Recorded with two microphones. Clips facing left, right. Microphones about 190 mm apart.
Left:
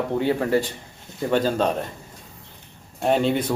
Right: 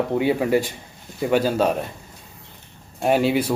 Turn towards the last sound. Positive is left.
turn(degrees=-5)  # may be behind; listen again after turning